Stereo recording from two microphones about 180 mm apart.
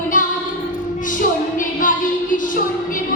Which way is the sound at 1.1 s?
45° left (ahead or behind).